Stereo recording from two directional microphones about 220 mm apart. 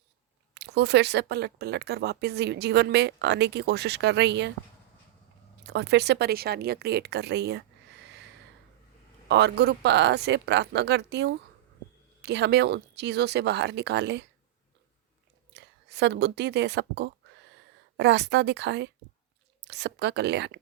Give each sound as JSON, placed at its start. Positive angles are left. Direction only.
{"t": 0.5, "sound": "speech", "side_deg": -50}
{"t": 5.6, "sound": "speech", "side_deg": -50}
{"t": 9.3, "sound": "speech", "side_deg": -50}
{"t": 15.5, "sound": "a woman's voice", "side_deg": -50}